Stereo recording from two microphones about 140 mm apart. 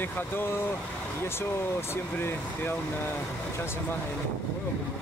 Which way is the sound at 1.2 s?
15° left (ahead or behind).